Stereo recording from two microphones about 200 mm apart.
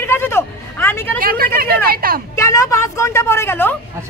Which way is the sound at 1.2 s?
45° right (ahead or behind).